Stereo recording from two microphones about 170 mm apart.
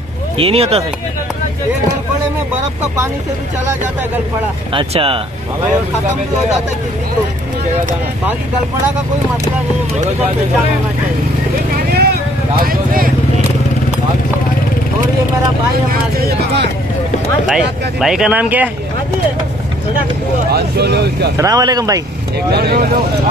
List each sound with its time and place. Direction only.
0.4 s speech: 35° right (ahead or behind)
4.7 s speech: 30° right (ahead or behind)
11.7 s vehicle: 65° right (ahead or behind)
12.6 s speech: 55° right (ahead or behind)
15.9 s speech: 60° right (ahead or behind)
17.5 s speech: 5° right (ahead or behind)
20.5 s speech: 75° right (ahead or behind)
21.4 s speech: 20° right (ahead or behind)
22.5 s speech: 65° right (ahead or behind)